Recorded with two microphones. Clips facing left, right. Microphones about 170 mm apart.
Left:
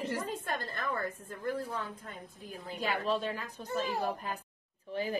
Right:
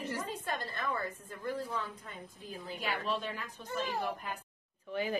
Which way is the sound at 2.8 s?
40° left (ahead or behind).